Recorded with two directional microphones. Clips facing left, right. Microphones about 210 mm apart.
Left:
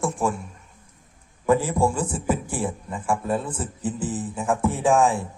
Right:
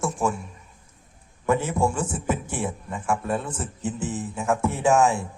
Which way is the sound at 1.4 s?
30° left (ahead or behind).